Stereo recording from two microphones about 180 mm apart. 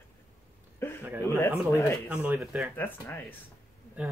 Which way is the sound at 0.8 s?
15° left (ahead or behind).